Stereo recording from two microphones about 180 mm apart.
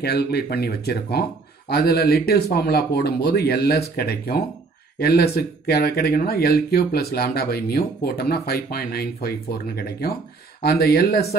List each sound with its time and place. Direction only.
0.0 s speech: 60° left (ahead or behind)